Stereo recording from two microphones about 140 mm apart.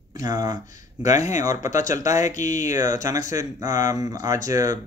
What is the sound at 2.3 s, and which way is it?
Speech, 60° left (ahead or behind).